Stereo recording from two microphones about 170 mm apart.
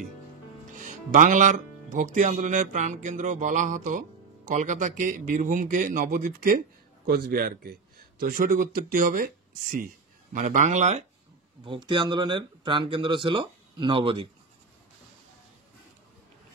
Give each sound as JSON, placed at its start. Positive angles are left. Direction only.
{"t": 0.7, "sound": "a man's voice", "side_deg": -50}
{"t": 11.6, "sound": "speech", "side_deg": -30}